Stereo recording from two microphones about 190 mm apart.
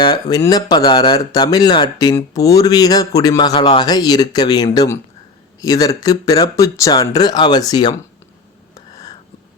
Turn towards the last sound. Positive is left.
turn(degrees=20)  # may be behind; listen again after turning